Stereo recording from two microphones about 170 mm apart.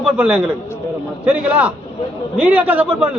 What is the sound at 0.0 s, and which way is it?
A man's voice, 5° right (ahead or behind).